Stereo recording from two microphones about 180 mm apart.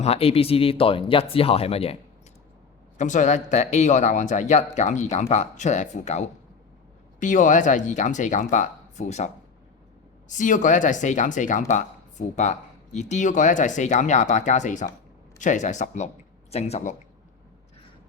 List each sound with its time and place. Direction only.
0.0 s speech: 35° left (ahead or behind)
3.0 s speech: 45° left (ahead or behind)